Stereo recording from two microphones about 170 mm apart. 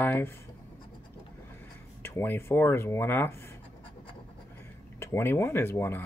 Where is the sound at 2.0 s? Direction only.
15° left (ahead or behind).